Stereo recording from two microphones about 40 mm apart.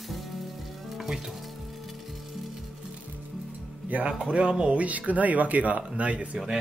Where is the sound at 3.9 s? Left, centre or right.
Right.